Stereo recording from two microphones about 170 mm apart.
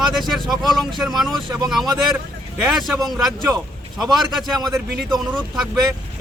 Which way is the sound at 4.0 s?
Centre (ahead or behind).